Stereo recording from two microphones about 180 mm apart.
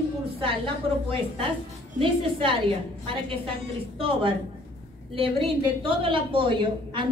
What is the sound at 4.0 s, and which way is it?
A woman's voice, 30° right (ahead or behind).